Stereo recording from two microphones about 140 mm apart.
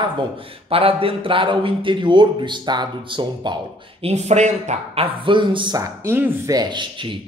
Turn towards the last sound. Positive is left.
turn(degrees=-35)  # may be behind; listen again after turning